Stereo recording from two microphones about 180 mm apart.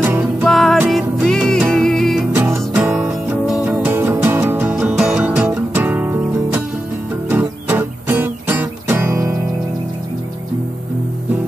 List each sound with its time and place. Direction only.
0.0 s music: 10° right (ahead or behind)
2.3 s music: 10° right (ahead or behind)